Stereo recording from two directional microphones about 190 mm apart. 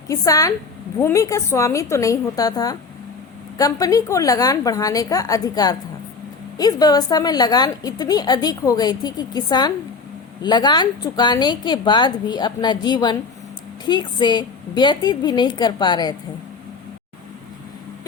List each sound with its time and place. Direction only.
0.1 s a woman's voice: 15° left (ahead or behind)